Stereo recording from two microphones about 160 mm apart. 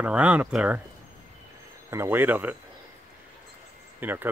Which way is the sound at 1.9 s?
15° right (ahead or behind).